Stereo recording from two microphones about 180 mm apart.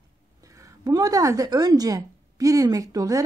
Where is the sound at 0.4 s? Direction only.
20° right (ahead or behind).